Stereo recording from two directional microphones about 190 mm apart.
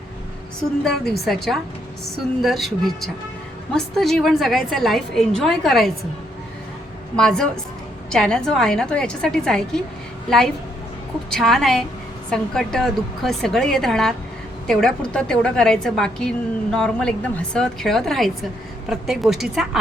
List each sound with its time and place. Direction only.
0.9 s a woman's voice: centre (ahead or behind)
7.2 s a woman's voice: 5° left (ahead or behind)